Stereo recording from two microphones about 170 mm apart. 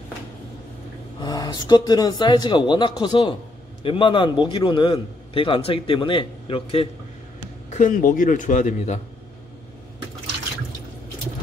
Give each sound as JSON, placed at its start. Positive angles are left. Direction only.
{"t": 1.2, "sound": "a man's voice", "side_deg": 25}
{"t": 7.7, "sound": "a man's voice", "side_deg": 50}